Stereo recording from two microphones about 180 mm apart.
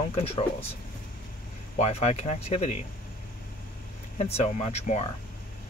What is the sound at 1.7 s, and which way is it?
Speech, 40° left (ahead or behind).